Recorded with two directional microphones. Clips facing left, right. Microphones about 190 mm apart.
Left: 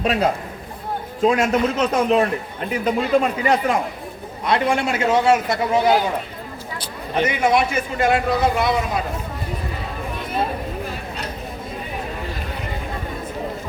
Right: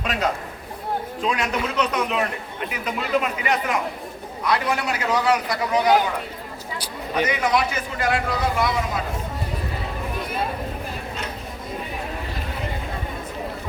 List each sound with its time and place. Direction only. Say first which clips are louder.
0.0 s a man's voice: left 5 dB; 35° left (ahead or behind)
1.9 s a man's voice: left 7 dB; 30° left (ahead or behind)
7.1 s a man's voice: left 3 dB; 25° left (ahead or behind)